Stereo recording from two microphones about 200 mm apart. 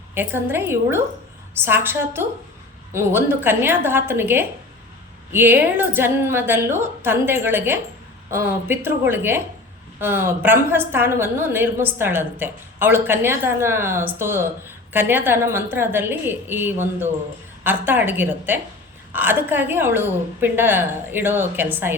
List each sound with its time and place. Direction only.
0.1 s a woman's voice: 10° right (ahead or behind)